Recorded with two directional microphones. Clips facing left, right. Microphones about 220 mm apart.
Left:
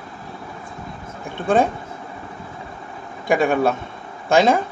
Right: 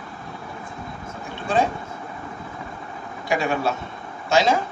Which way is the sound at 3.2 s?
55° left (ahead or behind).